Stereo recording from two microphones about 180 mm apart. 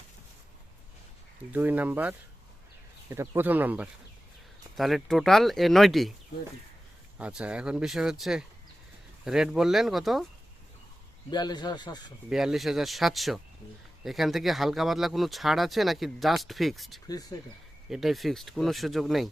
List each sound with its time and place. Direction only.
1.5 s speech: 10° right (ahead or behind)
7.2 s speech: 5° right (ahead or behind)
11.3 s speech: 25° left (ahead or behind)
12.3 s speech: 5° right (ahead or behind)
17.1 s speech: 20° left (ahead or behind)
17.8 s speech: centre (ahead or behind)